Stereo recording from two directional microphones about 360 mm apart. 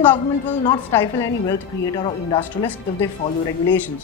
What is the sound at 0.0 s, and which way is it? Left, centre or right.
A woman's voice, centre.